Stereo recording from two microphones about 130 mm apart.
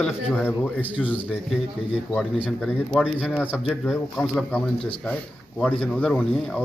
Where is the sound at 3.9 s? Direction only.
Centre (ahead or behind).